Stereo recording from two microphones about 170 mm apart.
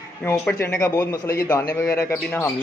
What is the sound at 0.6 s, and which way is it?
Speech, 15° left (ahead or behind).